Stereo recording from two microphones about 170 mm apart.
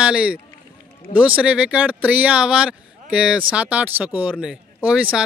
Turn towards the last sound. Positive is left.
turn(degrees=-5)  # may be behind; listen again after turning